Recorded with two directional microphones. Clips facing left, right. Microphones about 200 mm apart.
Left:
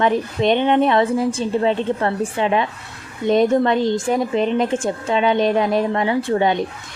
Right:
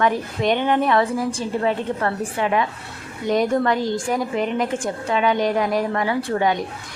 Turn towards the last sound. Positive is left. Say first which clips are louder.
# left 3 dB
turn(degrees=25)  # may be behind; listen again after turning